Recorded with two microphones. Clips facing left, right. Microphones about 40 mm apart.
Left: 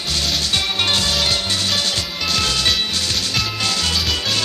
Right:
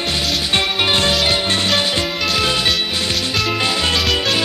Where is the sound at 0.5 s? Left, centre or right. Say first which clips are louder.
Right 4 dB; right.